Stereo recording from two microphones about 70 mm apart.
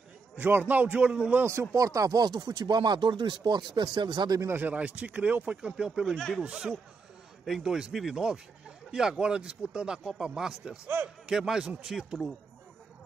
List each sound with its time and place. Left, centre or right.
0.4 s speech: right
1.5 s speech: right
4.5 s speech: right; by 6.1 s centre
6.1 s speech: centre
6.4 s a man's voice: centre